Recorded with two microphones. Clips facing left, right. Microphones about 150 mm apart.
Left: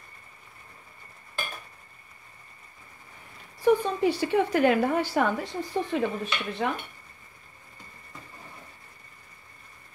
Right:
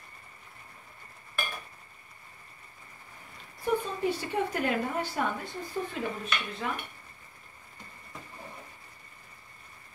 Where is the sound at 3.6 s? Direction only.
85° left.